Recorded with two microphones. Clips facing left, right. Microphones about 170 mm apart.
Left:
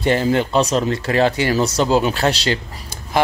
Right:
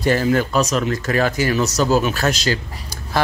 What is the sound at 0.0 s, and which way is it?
Speech, 25° left (ahead or behind).